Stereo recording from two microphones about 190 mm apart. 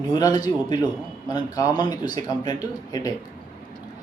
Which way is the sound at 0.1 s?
20° left (ahead or behind).